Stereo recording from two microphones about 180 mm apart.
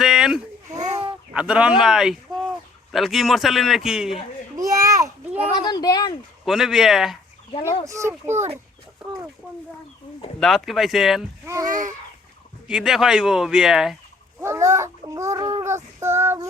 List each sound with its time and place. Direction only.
0.0 s a sound: 5° right (ahead or behind)
0.7 s a sound: 20° right (ahead or behind)
1.3 s a man's voice: 5° right (ahead or behind)
4.5 s a sound: 20° right (ahead or behind)
5.5 s speech: 25° left (ahead or behind)
6.4 s a man's voice: centre (ahead or behind)
7.9 s a child's voice: 15° right (ahead or behind)
10.4 s a man's voice: centre (ahead or behind)
11.4 s a child's voice: 15° right (ahead or behind)
11.7 s a sound: 45° right (ahead or behind)
12.6 s a man's voice: 5° right (ahead or behind)
14.4 s child singing: 15° right (ahead or behind)